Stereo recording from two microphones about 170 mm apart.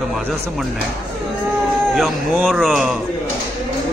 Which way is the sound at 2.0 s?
Centre (ahead or behind).